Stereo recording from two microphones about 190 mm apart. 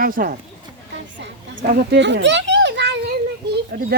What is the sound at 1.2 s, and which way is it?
Children playing, 60° right (ahead or behind).